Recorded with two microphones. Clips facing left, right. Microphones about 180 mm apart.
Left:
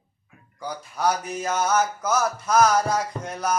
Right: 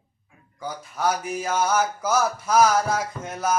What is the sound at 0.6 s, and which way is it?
Speech, 5° right (ahead or behind).